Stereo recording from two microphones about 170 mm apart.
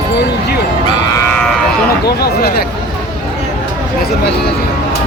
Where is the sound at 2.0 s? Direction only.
70° left (ahead or behind).